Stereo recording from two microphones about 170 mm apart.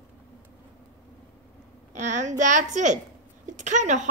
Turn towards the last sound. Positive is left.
turn(degrees=-45)  # may be behind; listen again after turning